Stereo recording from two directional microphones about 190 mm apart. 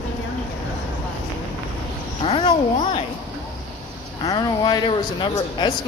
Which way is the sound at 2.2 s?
25° left (ahead or behind).